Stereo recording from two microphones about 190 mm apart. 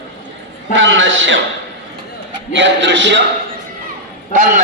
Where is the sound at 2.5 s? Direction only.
70° right (ahead or behind).